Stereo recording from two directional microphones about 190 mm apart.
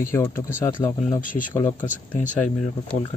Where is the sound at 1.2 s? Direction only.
45° left (ahead or behind).